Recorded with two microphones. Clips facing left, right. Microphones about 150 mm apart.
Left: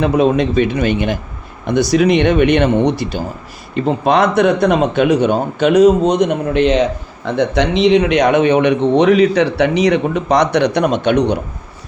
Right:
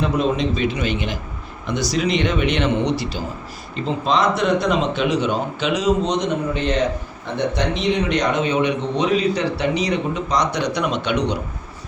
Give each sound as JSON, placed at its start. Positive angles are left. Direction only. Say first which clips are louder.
{"t": 0.0, "sound": "speech", "louder": "left 7 dB", "side_deg": 60}
{"t": 10.8, "sound": "speech", "louder": "left 7 dB", "side_deg": 50}